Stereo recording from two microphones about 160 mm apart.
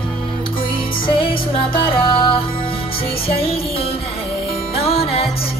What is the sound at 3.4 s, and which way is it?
Music, 35° left (ahead or behind).